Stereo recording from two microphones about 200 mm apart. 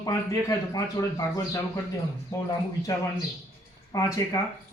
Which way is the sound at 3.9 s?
15° left (ahead or behind).